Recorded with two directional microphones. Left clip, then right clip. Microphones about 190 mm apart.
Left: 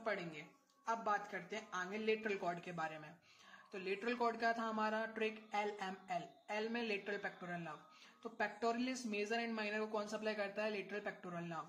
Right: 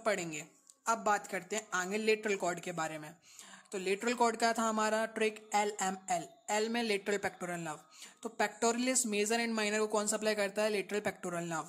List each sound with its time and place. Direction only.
0.0 s speech: 50° right (ahead or behind)